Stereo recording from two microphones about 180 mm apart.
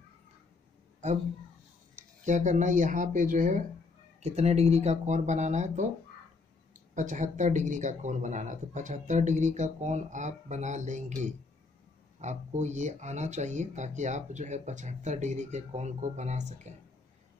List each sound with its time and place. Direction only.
1.0 s speech: 40° right (ahead or behind)
2.2 s speech: 45° right (ahead or behind)